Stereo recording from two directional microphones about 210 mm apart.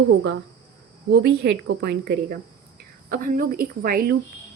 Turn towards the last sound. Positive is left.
turn(degrees=-45)  # may be behind; listen again after turning